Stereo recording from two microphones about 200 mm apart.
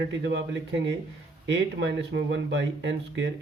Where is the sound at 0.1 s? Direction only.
60° right (ahead or behind).